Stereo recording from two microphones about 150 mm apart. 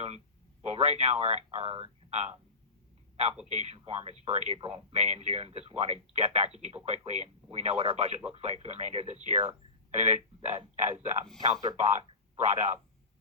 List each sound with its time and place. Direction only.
0.6 s speech: 45° right (ahead or behind)
3.5 s speech: 45° right (ahead or behind)